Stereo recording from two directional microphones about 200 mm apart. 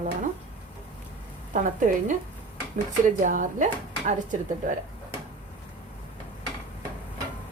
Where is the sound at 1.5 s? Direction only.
40° right (ahead or behind).